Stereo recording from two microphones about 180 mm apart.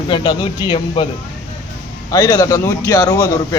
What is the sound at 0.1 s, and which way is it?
Speech, 30° left (ahead or behind).